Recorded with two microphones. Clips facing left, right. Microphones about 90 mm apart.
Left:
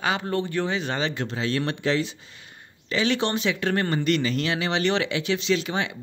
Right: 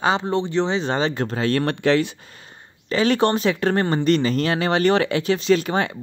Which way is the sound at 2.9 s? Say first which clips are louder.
Right 6 dB; 45° right (ahead or behind).